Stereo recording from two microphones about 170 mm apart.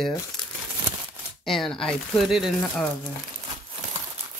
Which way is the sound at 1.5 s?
Centre (ahead or behind).